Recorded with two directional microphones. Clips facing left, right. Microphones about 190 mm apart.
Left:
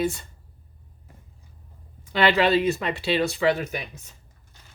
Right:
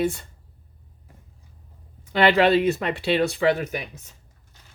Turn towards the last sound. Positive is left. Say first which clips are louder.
# right 1 dB
turn(degrees=-55)  # may be behind; listen again after turning